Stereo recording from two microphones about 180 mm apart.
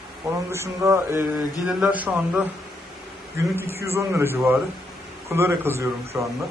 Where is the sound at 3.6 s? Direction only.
15° right (ahead or behind).